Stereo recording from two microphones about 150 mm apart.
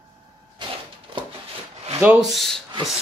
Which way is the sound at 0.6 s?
30° right (ahead or behind).